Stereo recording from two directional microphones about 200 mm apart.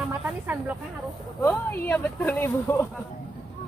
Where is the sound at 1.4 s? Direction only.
10° left (ahead or behind).